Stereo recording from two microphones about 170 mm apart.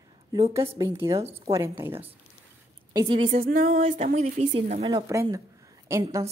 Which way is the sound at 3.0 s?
35° right (ahead or behind).